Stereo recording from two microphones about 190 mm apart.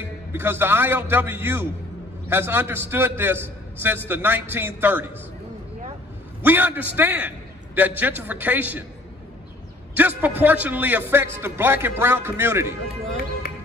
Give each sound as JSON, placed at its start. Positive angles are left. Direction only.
{"t": 0.3, "sound": "a man's voice", "side_deg": -10}
{"t": 6.4, "sound": "a man's voice", "side_deg": -10}
{"t": 9.9, "sound": "a man's voice", "side_deg": -10}
{"t": 13.4, "sound": "music", "side_deg": 50}